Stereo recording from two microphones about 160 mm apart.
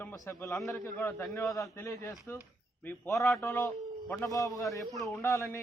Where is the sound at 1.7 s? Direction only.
20° left (ahead or behind).